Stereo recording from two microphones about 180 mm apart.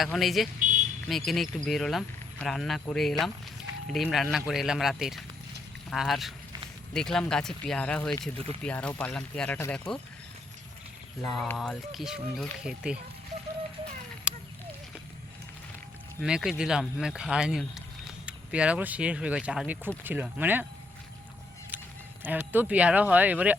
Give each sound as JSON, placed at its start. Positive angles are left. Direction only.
{"t": 0.0, "sound": "speech", "side_deg": 0}
{"t": 11.2, "sound": "speech", "side_deg": 5}
{"t": 14.3, "sound": "a sound", "side_deg": -5}
{"t": 16.2, "sound": "speech", "side_deg": -5}
{"t": 21.7, "sound": "a sound", "side_deg": -10}
{"t": 22.2, "sound": "speech", "side_deg": -10}